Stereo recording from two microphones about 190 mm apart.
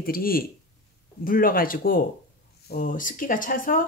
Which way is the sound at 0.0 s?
50° left (ahead or behind).